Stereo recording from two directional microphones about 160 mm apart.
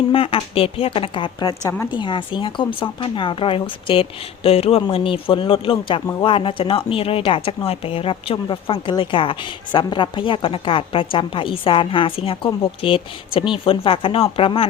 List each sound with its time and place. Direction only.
0.1 s speech: 35° left (ahead or behind)